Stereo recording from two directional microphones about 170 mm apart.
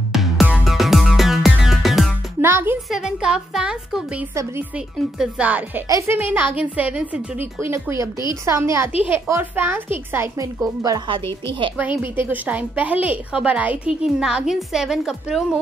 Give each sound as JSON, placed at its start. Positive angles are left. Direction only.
{"t": 0.1, "sound": "music", "side_deg": 0}
{"t": 2.4, "sound": "a woman's voice", "side_deg": -15}
{"t": 11.7, "sound": "a woman's voice", "side_deg": -10}